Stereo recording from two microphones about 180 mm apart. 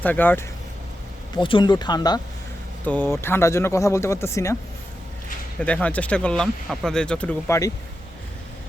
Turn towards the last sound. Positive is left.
turn(degrees=15)  # may be behind; listen again after turning